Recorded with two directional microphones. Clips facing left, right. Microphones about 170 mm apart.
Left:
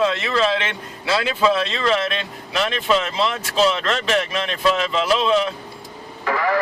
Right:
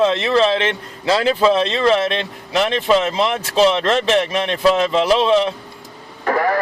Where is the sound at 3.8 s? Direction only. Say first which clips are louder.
Right 5 dB; 30° right (ahead or behind).